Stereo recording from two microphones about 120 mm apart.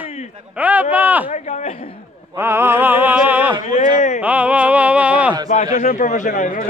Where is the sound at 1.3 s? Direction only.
90° left.